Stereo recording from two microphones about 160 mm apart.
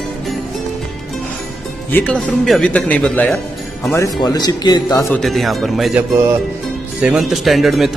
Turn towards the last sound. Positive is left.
turn(degrees=0)  # may be behind; listen again after turning